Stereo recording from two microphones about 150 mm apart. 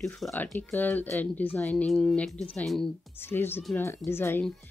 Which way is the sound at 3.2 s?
15° left (ahead or behind).